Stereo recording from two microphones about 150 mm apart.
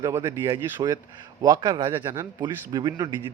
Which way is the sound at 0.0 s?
20° right (ahead or behind).